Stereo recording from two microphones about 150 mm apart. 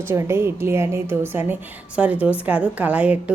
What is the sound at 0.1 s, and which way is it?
A woman's voice, 15° right (ahead or behind).